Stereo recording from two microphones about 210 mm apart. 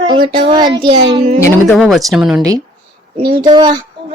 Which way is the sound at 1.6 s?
Centre (ahead or behind).